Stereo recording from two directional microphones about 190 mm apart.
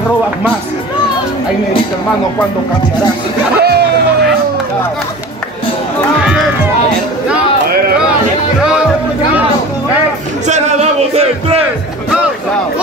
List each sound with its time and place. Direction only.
3.5 s music: 55° right (ahead or behind)
10.4 s music: 35° right (ahead or behind)